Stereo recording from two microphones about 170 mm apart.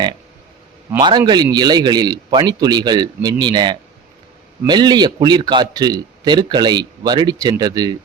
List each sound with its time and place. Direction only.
0.9 s a man's voice: 25° right (ahead or behind)